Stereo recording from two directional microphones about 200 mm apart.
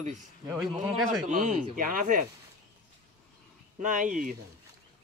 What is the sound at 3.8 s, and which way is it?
Speech, 40° right (ahead or behind).